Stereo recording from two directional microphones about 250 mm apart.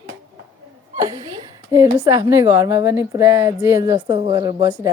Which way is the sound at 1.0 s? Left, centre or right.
Centre.